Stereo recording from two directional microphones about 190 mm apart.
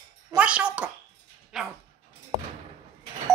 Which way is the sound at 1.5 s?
5° right (ahead or behind).